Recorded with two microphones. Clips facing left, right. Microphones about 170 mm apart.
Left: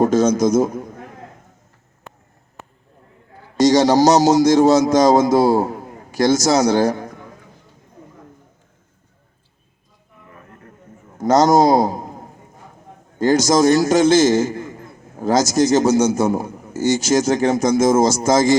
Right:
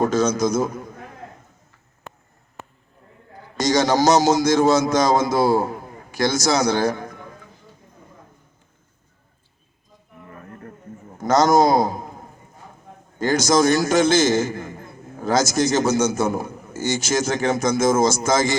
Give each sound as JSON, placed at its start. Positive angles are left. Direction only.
{"t": 0.0, "sound": "a man's voice", "side_deg": 45}
{"t": 3.6, "sound": "a man's voice", "side_deg": 35}
{"t": 11.2, "sound": "a man's voice", "side_deg": 40}
{"t": 13.1, "sound": "a man's voice", "side_deg": 40}